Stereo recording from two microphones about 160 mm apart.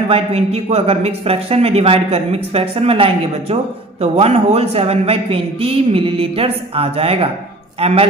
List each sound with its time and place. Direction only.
0.1 s a man's voice: 40° right (ahead or behind)